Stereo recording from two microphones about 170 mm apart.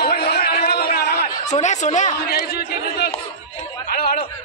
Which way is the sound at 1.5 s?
45° left (ahead or behind).